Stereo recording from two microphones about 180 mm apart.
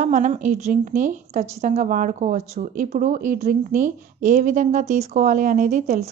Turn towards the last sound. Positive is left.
turn(degrees=-40)  # may be behind; listen again after turning